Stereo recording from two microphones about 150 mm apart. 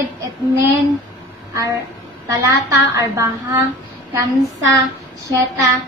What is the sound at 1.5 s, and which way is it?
A woman's voice, 20° right (ahead or behind).